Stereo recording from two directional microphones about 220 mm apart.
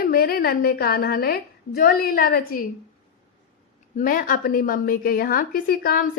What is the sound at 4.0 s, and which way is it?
A woman's voice, 40° left (ahead or behind).